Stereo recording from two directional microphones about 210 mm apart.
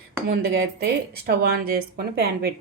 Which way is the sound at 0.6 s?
50° right (ahead or behind).